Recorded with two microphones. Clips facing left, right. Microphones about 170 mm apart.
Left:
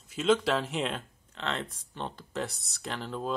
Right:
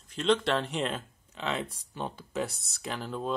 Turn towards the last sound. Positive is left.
turn(degrees=0)  # may be behind; listen again after turning